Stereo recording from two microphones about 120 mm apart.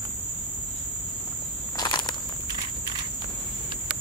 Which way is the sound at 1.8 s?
35° left (ahead or behind).